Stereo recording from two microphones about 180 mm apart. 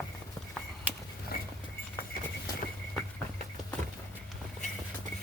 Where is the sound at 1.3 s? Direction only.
55° left (ahead or behind).